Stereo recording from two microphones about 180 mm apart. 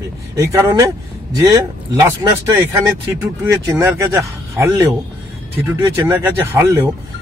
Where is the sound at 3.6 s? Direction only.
15° right (ahead or behind).